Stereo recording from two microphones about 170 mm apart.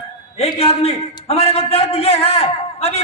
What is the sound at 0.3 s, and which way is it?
A man's voice, 35° left (ahead or behind).